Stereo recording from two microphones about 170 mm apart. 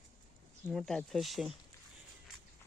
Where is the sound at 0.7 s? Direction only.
Centre (ahead or behind).